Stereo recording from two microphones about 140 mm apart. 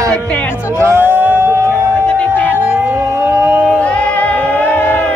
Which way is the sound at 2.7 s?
15° right (ahead or behind).